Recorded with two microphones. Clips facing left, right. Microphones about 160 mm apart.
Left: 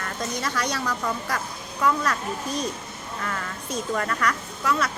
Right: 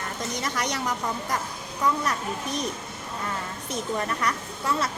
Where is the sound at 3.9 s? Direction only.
25° right (ahead or behind).